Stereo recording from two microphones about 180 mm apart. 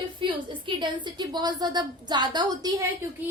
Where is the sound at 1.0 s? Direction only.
25° right (ahead or behind).